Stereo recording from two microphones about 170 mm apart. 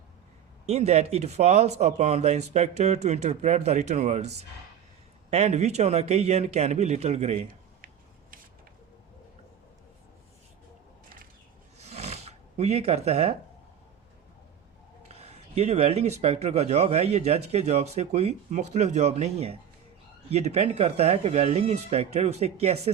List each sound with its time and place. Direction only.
0.6 s speech: 40° right (ahead or behind)
11.8 s roar: 40° right (ahead or behind)
15.1 s speech: 40° right (ahead or behind)